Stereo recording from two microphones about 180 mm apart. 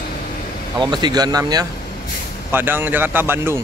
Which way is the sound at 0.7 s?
25° right (ahead or behind).